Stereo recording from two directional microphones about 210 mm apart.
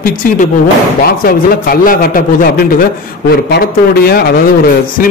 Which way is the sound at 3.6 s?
45° left (ahead or behind).